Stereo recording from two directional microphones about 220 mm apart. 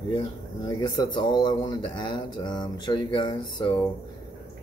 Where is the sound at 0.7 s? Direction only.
15° left (ahead or behind).